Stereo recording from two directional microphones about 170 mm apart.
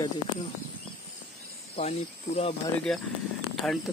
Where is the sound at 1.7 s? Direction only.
40° left (ahead or behind).